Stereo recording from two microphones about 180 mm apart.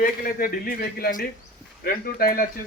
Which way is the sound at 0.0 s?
55° left (ahead or behind).